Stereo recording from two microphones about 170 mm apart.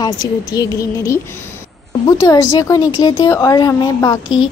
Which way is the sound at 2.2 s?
20° left (ahead or behind).